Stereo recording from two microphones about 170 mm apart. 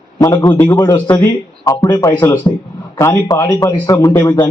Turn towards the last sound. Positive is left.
turn(degrees=25)  # may be behind; listen again after turning